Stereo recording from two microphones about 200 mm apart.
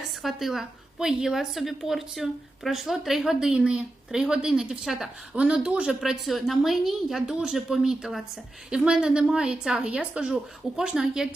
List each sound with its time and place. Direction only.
0.2 s a woman's voice: centre (ahead or behind)